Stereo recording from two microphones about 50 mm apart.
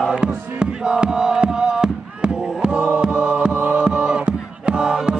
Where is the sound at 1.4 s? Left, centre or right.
Centre.